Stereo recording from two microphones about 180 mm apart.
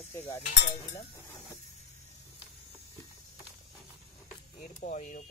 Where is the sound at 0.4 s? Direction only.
40° left (ahead or behind).